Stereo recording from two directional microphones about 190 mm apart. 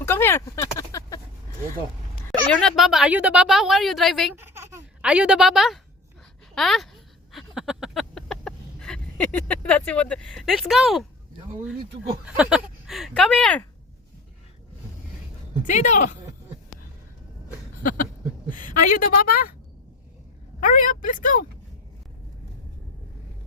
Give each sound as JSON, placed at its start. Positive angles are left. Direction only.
{"t": 0.0, "sound": "a sound", "side_deg": 10}
{"t": 2.5, "sound": "a woman's voice", "side_deg": 5}
{"t": 4.4, "sound": "a sound", "side_deg": -15}
{"t": 6.5, "sound": "speech", "side_deg": 0}
{"t": 7.3, "sound": "a sound", "side_deg": 0}
{"t": 12.2, "sound": "speech", "side_deg": -5}
{"t": 15.6, "sound": "a woman's voice", "side_deg": 40}
{"t": 17.8, "sound": "a woman's voice", "side_deg": 45}
{"t": 20.6, "sound": "speech", "side_deg": 45}